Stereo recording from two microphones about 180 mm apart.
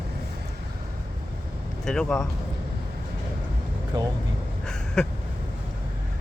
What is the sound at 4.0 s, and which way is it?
Speech, 20° right (ahead or behind).